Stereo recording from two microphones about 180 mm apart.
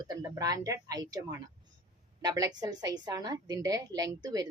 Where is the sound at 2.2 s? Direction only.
20° right (ahead or behind).